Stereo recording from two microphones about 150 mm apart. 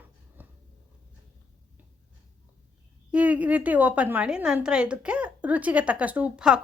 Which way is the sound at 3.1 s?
10° right (ahead or behind).